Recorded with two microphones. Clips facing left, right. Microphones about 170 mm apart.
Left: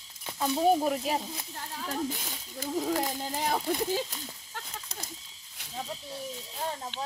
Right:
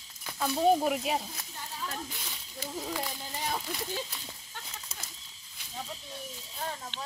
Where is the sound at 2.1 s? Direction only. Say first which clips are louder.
Left 7 dB; 45° left (ahead or behind).